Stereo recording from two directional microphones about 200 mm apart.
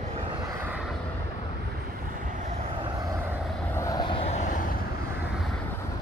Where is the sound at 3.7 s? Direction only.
15° left (ahead or behind); by 4.7 s 40° left (ahead or behind).